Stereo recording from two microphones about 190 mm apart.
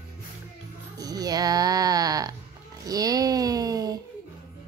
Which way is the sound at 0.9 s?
20° right (ahead or behind).